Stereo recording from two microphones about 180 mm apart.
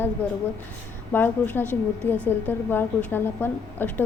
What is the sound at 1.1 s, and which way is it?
A woman's voice, 10° left (ahead or behind).